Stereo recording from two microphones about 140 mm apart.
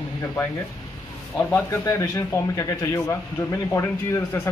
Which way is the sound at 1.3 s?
20° left (ahead or behind).